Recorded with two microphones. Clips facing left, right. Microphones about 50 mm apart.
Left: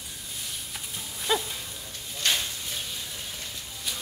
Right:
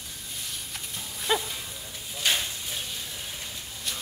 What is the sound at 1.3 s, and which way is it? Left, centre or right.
Music, centre.